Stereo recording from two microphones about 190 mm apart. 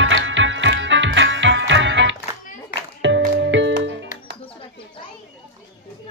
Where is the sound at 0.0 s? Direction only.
80° right.